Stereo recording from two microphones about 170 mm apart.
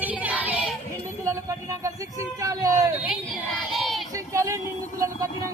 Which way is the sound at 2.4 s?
20° right (ahead or behind).